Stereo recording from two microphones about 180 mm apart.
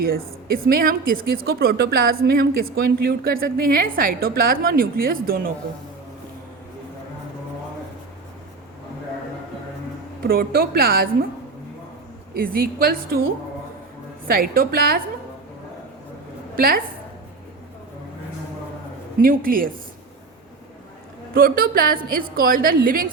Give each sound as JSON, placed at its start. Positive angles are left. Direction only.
{"t": 0.0, "sound": "a woman's voice", "side_deg": -55}
{"t": 10.2, "sound": "a woman's voice", "side_deg": -55}
{"t": 12.3, "sound": "a woman's voice", "side_deg": -55}
{"t": 14.3, "sound": "a woman's voice", "side_deg": -55}
{"t": 16.6, "sound": "a woman's voice", "side_deg": -55}
{"t": 19.2, "sound": "a woman's voice", "side_deg": -50}
{"t": 21.3, "sound": "a woman's voice", "side_deg": -55}